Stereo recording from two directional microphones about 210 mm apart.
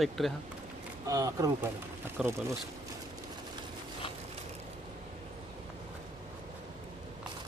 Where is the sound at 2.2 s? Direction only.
Centre (ahead or behind).